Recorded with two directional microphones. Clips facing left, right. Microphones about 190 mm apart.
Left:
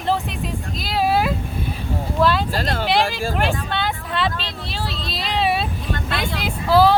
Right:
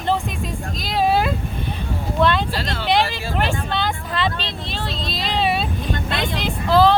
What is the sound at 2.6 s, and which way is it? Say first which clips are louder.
Speech: left 3 dB; 50° left (ahead or behind).